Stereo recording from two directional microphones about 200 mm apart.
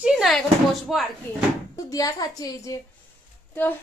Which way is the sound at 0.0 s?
Centre (ahead or behind).